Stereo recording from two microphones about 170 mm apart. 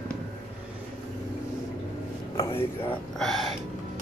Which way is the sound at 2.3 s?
20° left (ahead or behind).